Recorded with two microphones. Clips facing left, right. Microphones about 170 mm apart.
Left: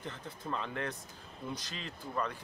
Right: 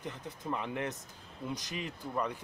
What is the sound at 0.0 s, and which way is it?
Speech, 15° right (ahead or behind).